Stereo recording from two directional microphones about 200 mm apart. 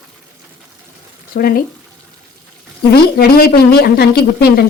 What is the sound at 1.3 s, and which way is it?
Speech, 45° left (ahead or behind).